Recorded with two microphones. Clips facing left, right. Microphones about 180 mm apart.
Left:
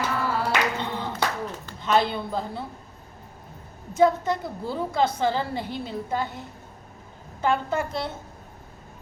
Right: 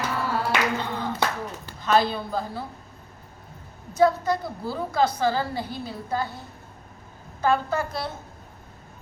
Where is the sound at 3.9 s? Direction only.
20° left (ahead or behind).